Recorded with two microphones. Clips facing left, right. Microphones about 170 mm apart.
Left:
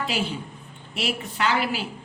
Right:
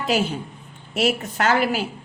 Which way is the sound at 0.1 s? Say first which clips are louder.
Right 5 dB; 45° right (ahead or behind).